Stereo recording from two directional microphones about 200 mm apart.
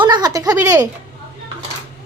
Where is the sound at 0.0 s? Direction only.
20° right (ahead or behind).